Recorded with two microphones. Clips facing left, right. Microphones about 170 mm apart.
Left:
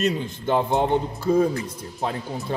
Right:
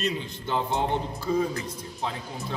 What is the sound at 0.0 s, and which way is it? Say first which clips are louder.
A man's voice: left 6 dB; 50° left (ahead or behind).